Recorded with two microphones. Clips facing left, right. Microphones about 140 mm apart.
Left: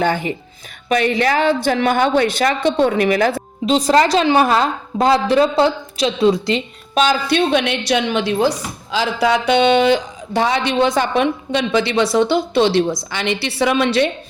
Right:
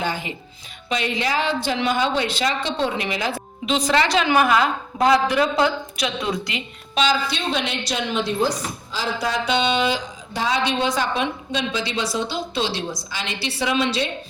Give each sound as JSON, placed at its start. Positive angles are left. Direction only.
{"t": 0.0, "sound": "speech", "side_deg": 55}
{"t": 3.7, "sound": "a woman's voice", "side_deg": 35}
{"t": 6.9, "sound": "speech", "side_deg": 50}